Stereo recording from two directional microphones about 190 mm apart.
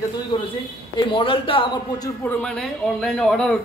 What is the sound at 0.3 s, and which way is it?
Speech, 25° left (ahead or behind).